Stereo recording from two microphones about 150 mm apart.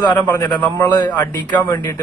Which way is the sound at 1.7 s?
15° left (ahead or behind).